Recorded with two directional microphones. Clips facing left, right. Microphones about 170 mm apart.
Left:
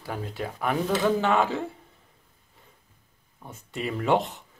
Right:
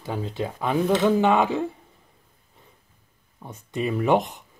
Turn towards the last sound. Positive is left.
turn(degrees=-15)  # may be behind; listen again after turning